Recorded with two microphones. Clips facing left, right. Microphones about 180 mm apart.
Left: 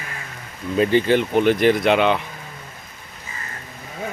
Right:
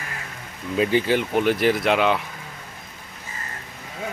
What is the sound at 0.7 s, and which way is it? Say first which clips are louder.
Speech: left 3 dB; 5° right (ahead or behind).